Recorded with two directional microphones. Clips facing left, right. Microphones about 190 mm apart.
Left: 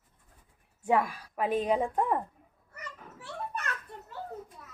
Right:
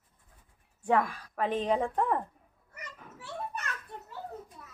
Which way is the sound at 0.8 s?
10° left (ahead or behind).